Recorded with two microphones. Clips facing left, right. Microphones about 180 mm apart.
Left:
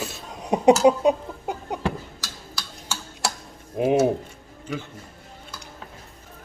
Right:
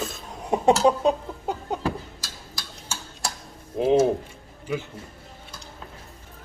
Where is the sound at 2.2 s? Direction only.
70° left (ahead or behind).